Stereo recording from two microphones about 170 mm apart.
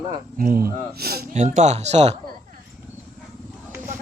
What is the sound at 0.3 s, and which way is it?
Speech, 55° right (ahead or behind).